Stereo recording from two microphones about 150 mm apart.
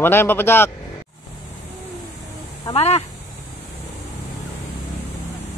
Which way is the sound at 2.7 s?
45° left (ahead or behind).